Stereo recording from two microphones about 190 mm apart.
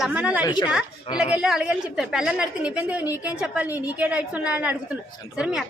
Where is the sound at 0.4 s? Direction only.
20° left (ahead or behind).